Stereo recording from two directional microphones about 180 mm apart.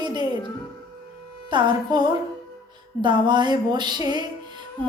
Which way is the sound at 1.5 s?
25° right (ahead or behind).